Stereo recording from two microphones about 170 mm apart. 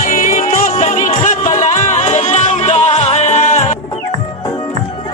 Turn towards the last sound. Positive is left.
turn(degrees=40)  # may be behind; listen again after turning